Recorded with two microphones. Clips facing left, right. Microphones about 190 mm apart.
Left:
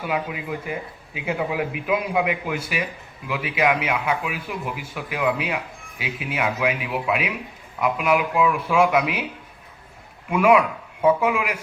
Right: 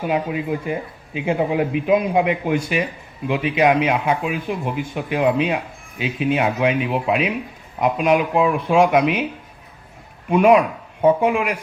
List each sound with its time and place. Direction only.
0.0 s speech: 30° right (ahead or behind)
10.2 s speech: 35° right (ahead or behind)